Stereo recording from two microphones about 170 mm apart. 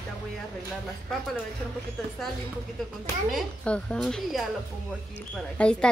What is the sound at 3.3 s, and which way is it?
A woman's voice, 5° left (ahead or behind).